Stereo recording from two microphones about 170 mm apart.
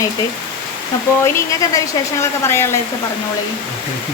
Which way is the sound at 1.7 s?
15° left (ahead or behind).